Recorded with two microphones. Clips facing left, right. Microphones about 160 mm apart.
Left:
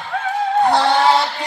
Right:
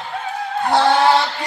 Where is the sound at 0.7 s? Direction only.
Centre (ahead or behind).